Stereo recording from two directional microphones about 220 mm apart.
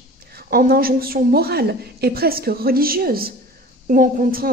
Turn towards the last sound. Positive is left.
turn(degrees=-40)  # may be behind; listen again after turning